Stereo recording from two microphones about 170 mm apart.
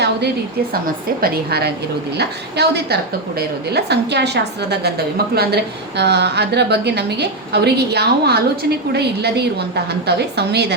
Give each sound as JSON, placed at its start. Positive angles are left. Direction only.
{"t": 1.2, "sound": "a woman's voice", "side_deg": -70}
{"t": 6.0, "sound": "a woman's voice", "side_deg": -85}